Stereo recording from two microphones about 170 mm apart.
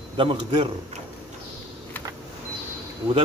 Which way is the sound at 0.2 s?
30° right (ahead or behind).